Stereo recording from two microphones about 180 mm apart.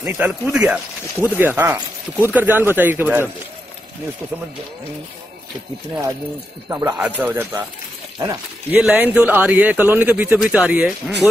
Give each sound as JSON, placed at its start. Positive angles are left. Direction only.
{"t": 0.0, "sound": "speech", "side_deg": -10}
{"t": 6.7, "sound": "speech", "side_deg": -15}
{"t": 8.8, "sound": "speech", "side_deg": -5}